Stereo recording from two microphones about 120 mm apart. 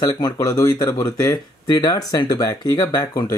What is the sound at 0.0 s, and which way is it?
Speech, 30° left (ahead or behind).